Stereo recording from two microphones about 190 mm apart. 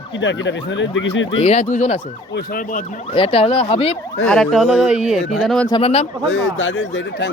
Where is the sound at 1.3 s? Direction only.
35° left (ahead or behind).